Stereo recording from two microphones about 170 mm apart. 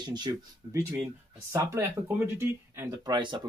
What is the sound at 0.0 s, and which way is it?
Speech, 25° right (ahead or behind).